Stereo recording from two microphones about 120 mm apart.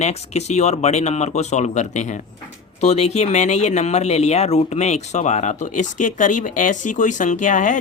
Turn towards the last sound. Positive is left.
turn(degrees=90)